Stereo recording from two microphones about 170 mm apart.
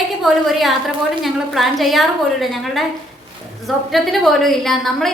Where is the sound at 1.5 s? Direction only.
Centre (ahead or behind).